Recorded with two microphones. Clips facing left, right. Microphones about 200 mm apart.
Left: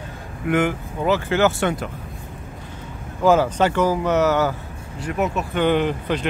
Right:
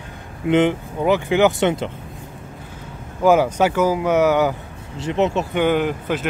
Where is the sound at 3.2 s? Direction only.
10° right (ahead or behind).